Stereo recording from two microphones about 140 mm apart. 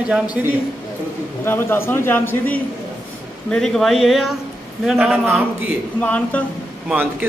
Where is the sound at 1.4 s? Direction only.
15° left (ahead or behind); by 5.4 s 5° right (ahead or behind).